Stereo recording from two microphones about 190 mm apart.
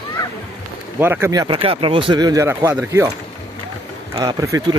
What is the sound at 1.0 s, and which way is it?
Speech, 10° right (ahead or behind).